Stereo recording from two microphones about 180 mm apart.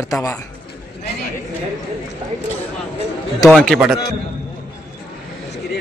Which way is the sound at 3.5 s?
Centre (ahead or behind).